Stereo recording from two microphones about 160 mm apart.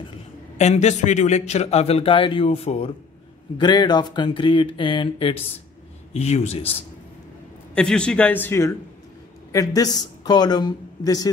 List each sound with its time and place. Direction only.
0.6 s a man's voice: 45° left (ahead or behind)
3.5 s speech: 25° left (ahead or behind)
7.7 s a man's voice: 5° left (ahead or behind); by 11.3 s 25° left (ahead or behind)